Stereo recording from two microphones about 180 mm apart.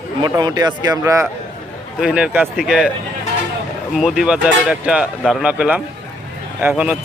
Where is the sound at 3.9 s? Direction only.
Centre (ahead or behind).